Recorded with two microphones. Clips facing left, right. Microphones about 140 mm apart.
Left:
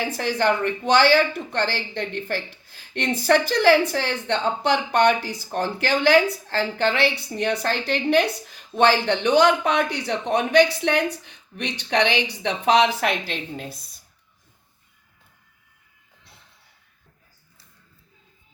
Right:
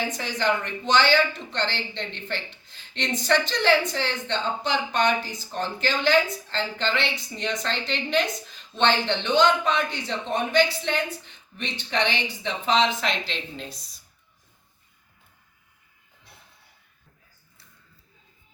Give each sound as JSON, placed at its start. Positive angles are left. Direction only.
{"t": 0.2, "sound": "speech", "side_deg": 60}
{"t": 2.3, "sound": "speech", "side_deg": 10}
{"t": 2.9, "sound": "a woman's voice", "side_deg": 60}
{"t": 9.3, "sound": "speech", "side_deg": 10}
{"t": 9.6, "sound": "a woman's voice", "side_deg": 70}
{"t": 13.2, "sound": "speech", "side_deg": 55}